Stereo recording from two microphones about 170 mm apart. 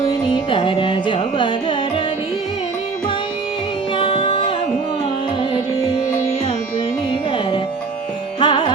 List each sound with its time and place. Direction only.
0.3 s carnatic music: 30° left (ahead or behind)
3.9 s music: 30° left (ahead or behind)
8.4 s music: 30° left (ahead or behind)